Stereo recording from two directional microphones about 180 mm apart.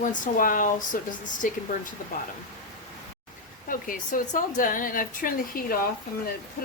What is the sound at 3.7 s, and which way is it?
A woman's voice, 50° left (ahead or behind).